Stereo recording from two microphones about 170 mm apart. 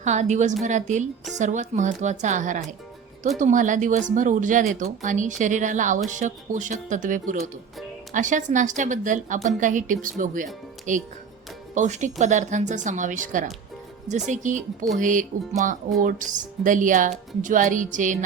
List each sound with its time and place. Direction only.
0.0 s a woman's voice: 45° right (ahead or behind)